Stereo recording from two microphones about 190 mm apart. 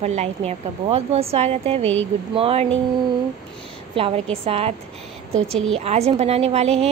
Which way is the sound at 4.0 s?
30° right (ahead or behind).